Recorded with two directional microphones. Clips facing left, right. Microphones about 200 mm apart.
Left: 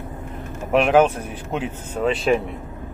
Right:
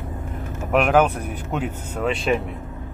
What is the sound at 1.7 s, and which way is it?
Speech, centre (ahead or behind).